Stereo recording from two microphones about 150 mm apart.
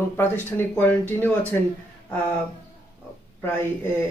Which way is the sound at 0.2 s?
15° left (ahead or behind).